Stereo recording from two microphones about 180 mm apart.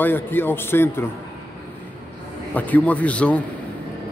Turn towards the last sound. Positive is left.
turn(degrees=5)  # may be behind; listen again after turning